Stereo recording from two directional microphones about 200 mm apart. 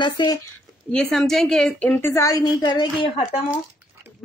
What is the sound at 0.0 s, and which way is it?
Speech, 20° left (ahead or behind).